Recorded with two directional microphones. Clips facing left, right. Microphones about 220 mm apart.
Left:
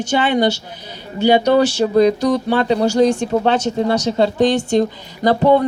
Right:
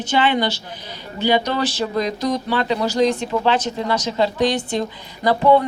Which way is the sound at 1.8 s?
35° left (ahead or behind).